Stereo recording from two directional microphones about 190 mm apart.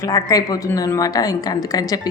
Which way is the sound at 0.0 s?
20° left (ahead or behind).